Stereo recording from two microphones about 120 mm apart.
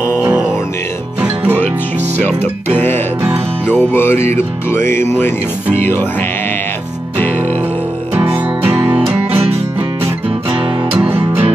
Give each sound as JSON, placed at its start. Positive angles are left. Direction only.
{"t": 0.0, "sound": "music", "side_deg": -15}
{"t": 2.2, "sound": "music", "side_deg": 15}
{"t": 3.7, "sound": "speech", "side_deg": 20}
{"t": 5.8, "sound": "music", "side_deg": 15}
{"t": 8.1, "sound": "music", "side_deg": -15}
{"t": 11.0, "sound": "music", "side_deg": -15}